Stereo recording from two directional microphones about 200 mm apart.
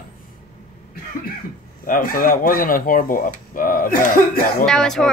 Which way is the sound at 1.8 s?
45° left (ahead or behind).